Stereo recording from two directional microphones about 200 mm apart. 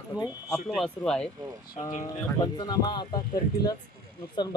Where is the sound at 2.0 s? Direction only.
20° left (ahead or behind).